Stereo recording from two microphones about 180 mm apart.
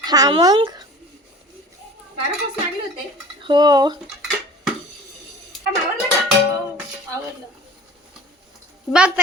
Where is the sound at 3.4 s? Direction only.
25° right (ahead or behind).